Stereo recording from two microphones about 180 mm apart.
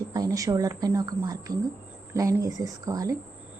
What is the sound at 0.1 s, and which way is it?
A woman's voice, 20° right (ahead or behind).